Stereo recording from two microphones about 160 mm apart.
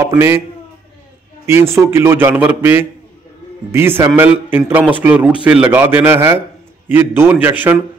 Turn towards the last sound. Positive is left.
turn(degrees=-10)  # may be behind; listen again after turning